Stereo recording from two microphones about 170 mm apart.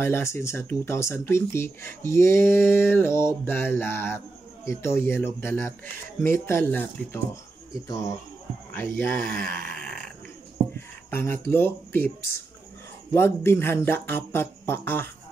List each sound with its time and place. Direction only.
0.0 s speech: 15° left (ahead or behind)
8.7 s speech: 10° left (ahead or behind)
9.3 s a sound: 60° right (ahead or behind)
11.1 s speech: 10° left (ahead or behind)